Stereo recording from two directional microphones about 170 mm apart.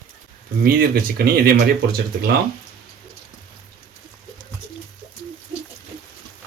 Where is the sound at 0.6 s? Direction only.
60° right (ahead or behind).